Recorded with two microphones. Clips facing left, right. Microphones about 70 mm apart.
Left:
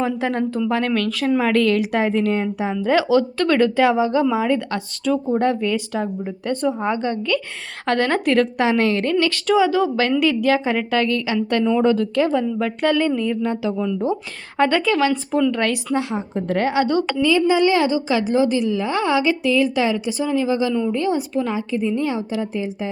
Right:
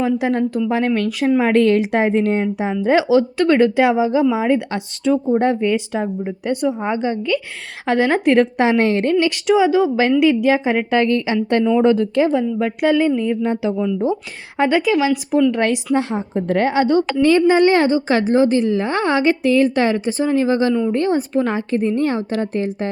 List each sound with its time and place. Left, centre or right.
0.0 s speech: centre
0.7 s a woman's voice: centre
15.5 s a woman's voice: right
16.0 s a woman's voice: right
17.2 s a woman's voice: right